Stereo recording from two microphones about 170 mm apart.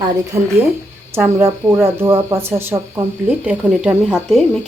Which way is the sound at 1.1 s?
15° right (ahead or behind).